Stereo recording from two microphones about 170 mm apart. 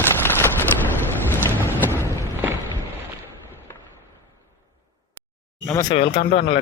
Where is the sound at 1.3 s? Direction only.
15° left (ahead or behind).